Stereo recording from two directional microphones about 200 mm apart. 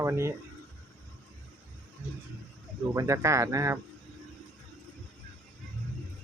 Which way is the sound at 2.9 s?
15° right (ahead or behind).